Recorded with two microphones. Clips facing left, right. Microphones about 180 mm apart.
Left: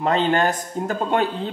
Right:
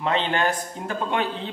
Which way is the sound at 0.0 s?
40° left (ahead or behind).